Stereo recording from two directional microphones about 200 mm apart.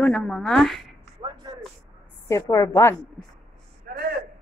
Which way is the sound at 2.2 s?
15° left (ahead or behind).